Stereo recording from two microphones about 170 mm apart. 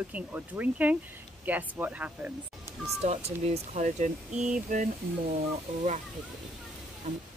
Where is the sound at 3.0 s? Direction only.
40° right (ahead or behind).